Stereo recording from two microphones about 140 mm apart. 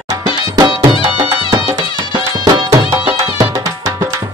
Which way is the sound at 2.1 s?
25° right (ahead or behind).